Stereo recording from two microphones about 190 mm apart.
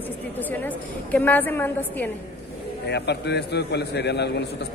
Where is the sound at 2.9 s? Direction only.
60° left (ahead or behind).